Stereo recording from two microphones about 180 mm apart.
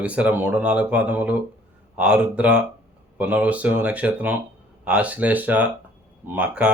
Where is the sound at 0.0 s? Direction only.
5° right (ahead or behind).